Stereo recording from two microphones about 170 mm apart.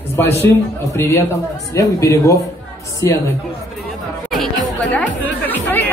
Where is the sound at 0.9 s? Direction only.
15° left (ahead or behind).